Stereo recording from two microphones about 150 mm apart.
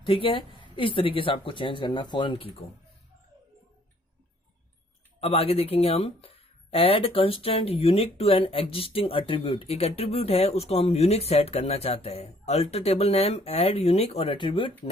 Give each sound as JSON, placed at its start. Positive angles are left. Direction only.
{"t": 0.0, "sound": "speech", "side_deg": 35}
{"t": 5.2, "sound": "speech", "side_deg": 40}